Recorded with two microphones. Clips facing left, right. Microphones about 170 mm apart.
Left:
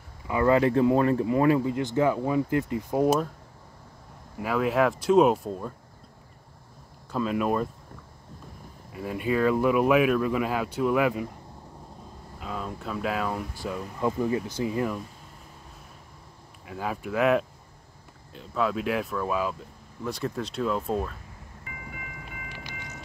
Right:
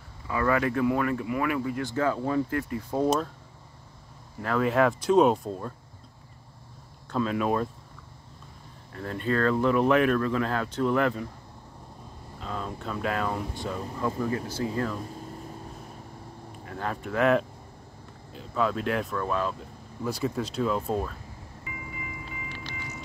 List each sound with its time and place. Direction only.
0.3 s speech: 25° left (ahead or behind)
4.4 s speech: 5° left (ahead or behind)
7.1 s speech: 5° left (ahead or behind)
8.9 s speech: 10° left (ahead or behind)
12.4 s speech: 5° left (ahead or behind)
13.9 s speech: 20° left (ahead or behind)
16.6 s speech: 5° left (ahead or behind)
20.1 s speech: 5° right (ahead or behind)
22.5 s train: 15° left (ahead or behind)